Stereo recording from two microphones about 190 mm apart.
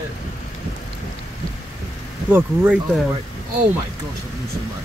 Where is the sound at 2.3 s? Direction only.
10° right (ahead or behind).